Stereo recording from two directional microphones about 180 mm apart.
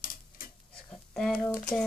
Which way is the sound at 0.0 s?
50° left (ahead or behind).